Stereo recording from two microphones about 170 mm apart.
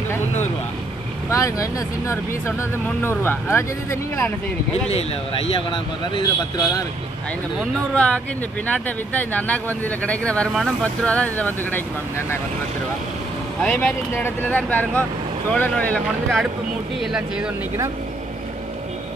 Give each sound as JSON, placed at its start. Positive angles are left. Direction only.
{"t": 1.3, "sound": "speech", "side_deg": 20}
{"t": 4.8, "sound": "speech", "side_deg": 35}
{"t": 7.9, "sound": "speech", "side_deg": 5}
{"t": 13.6, "sound": "speech", "side_deg": 5}